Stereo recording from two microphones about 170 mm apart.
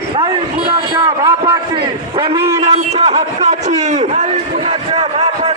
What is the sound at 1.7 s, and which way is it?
A man's voice, 30° right (ahead or behind).